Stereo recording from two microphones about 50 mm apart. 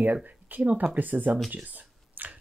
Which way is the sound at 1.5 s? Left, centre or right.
Right.